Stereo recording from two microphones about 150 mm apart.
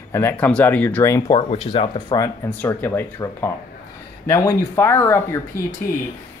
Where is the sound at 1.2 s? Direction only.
40° left (ahead or behind).